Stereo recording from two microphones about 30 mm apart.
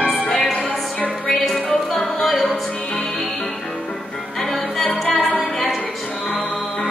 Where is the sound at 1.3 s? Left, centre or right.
Centre.